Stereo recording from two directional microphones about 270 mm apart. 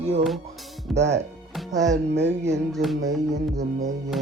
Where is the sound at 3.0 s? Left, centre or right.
Centre.